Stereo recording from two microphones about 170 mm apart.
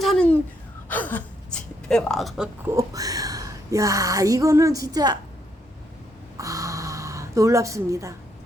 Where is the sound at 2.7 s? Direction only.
20° right (ahead or behind).